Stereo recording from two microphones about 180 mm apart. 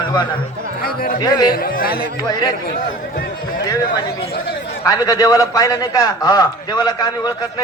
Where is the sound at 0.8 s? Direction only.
55° left (ahead or behind).